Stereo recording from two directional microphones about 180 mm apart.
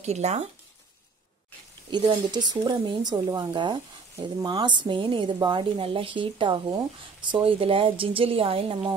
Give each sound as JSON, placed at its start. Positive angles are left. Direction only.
{"t": 0.0, "sound": "speech", "side_deg": -40}
{"t": 1.9, "sound": "a woman's voice", "side_deg": -25}